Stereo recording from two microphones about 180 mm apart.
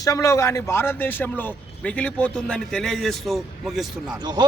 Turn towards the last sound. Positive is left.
turn(degrees=-25)  # may be behind; listen again after turning